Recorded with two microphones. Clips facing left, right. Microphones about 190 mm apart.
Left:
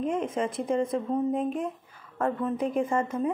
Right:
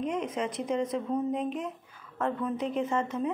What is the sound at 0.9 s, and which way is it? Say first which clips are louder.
Speech: left 3 dB; 5° left (ahead or behind).